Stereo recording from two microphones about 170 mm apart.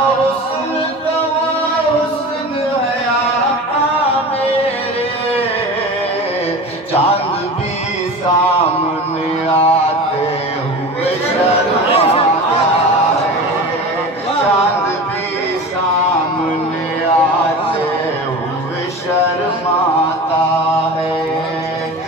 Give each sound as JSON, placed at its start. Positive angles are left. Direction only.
{"t": 9.5, "sound": "mantra", "side_deg": 35}
{"t": 11.9, "sound": "chatter", "side_deg": 35}